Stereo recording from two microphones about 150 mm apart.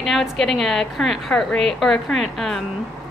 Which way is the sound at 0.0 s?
Centre (ahead or behind).